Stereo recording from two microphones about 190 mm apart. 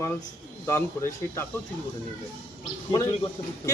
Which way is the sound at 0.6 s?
15° left (ahead or behind).